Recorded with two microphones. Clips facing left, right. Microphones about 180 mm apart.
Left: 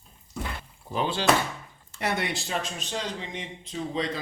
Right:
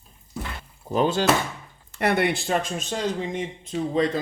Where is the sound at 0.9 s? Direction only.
45° right (ahead or behind).